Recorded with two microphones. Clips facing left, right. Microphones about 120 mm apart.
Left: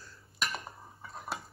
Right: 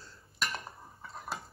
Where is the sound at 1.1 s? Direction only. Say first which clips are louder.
Left 1 dB; centre (ahead or behind).